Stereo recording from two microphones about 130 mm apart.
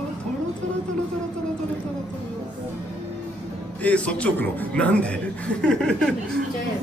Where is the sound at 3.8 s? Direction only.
10° left (ahead or behind).